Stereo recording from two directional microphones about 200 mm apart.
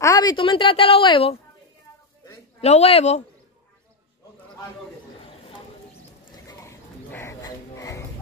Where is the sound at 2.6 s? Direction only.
30° left (ahead or behind).